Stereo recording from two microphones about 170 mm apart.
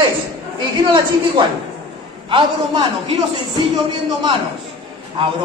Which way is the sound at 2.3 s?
30° right (ahead or behind).